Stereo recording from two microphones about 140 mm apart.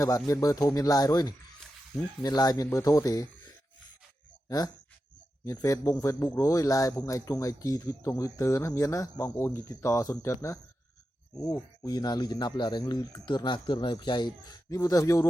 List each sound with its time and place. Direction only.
0.0 s speech: 25° left (ahead or behind)
4.4 s speech: 25° left (ahead or behind)